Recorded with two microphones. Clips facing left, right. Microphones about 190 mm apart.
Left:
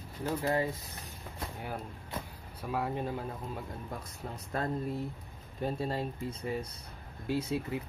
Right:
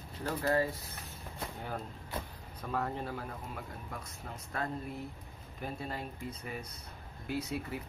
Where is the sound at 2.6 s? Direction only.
10° left (ahead or behind).